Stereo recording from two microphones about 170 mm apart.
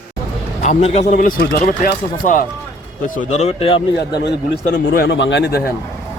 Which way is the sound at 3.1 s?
40° left (ahead or behind).